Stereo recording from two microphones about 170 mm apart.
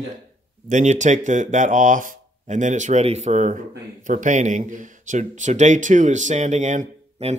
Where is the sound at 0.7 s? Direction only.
45° right (ahead or behind).